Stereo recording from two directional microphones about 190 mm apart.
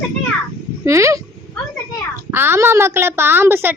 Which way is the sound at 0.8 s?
15° right (ahead or behind).